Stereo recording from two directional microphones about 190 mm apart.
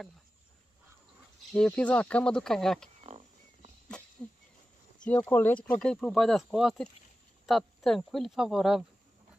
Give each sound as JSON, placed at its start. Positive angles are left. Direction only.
{"t": 1.5, "sound": "speech", "side_deg": 5}
{"t": 3.0, "sound": "cricket", "side_deg": -35}
{"t": 5.0, "sound": "speech", "side_deg": 10}